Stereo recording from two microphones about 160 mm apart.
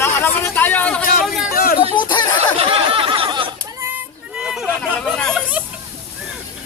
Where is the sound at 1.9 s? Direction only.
30° left (ahead or behind).